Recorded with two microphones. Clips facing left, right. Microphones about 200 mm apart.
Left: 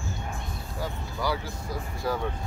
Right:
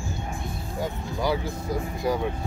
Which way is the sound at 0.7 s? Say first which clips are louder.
Right 4 dB; 20° right (ahead or behind).